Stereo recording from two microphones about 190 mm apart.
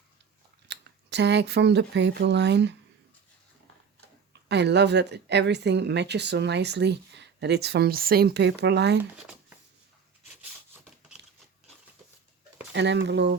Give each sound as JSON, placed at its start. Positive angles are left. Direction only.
{"t": 0.7, "sound": "speech", "side_deg": -65}
{"t": 4.4, "sound": "speech", "side_deg": -65}
{"t": 12.7, "sound": "speech", "side_deg": -65}